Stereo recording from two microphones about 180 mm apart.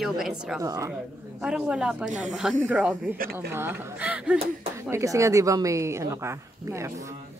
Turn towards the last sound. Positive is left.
turn(degrees=-15)  # may be behind; listen again after turning